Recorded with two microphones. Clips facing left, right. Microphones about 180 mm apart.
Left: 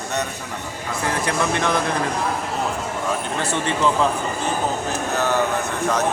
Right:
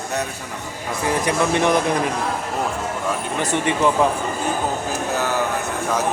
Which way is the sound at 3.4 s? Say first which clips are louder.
Right 3 dB; 15° right (ahead or behind).